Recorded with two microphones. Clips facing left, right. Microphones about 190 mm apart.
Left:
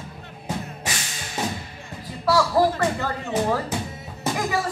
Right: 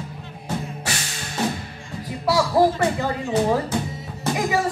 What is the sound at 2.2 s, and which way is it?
Speech, 15° right (ahead or behind).